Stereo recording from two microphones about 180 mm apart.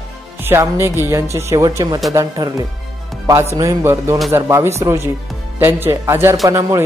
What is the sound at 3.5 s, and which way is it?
Speech, 15° right (ahead or behind).